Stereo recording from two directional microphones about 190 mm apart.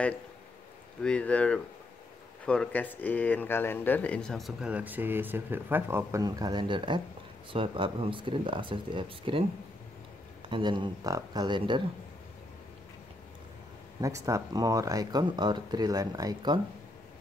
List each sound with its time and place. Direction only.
1.0 s speech: 5° left (ahead or behind); by 9.4 s 25° right (ahead or behind)
10.5 s speech: 25° right (ahead or behind)
14.0 s speech: 15° right (ahead or behind)